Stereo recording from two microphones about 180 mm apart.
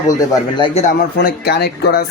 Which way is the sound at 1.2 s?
65° left (ahead or behind).